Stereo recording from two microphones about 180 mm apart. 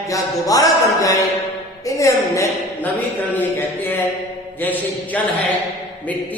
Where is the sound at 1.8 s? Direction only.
15° left (ahead or behind).